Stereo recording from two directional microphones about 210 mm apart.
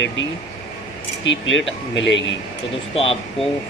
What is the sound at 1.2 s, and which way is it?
Speech, 60° left (ahead or behind).